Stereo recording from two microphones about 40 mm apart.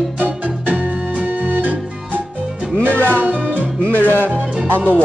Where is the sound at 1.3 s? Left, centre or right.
Right.